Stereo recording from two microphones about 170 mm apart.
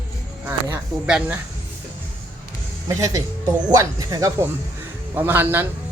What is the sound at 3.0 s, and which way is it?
Speech, 20° right (ahead or behind).